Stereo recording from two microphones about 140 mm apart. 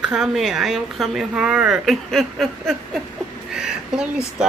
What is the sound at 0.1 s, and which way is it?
A woman's voice, centre (ahead or behind).